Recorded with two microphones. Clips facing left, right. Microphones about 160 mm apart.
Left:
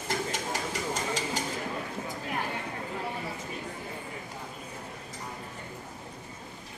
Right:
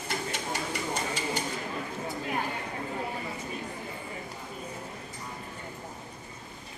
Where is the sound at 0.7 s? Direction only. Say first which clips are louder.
Even; 90° left.